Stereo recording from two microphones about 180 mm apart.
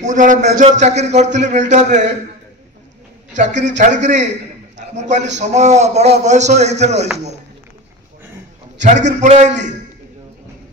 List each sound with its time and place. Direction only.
0.0 s a man's voice: 45° right (ahead or behind)
3.3 s a man's voice: 40° right (ahead or behind)
8.8 s a man's voice: 40° right (ahead or behind)